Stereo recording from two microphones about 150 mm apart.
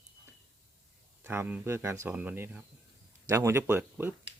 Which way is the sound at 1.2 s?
15° right (ahead or behind).